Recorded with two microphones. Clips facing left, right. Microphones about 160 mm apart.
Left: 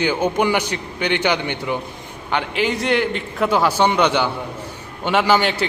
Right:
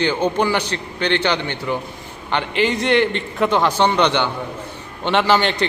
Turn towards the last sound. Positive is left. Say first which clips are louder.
# even
turn(degrees=5)  # may be behind; listen again after turning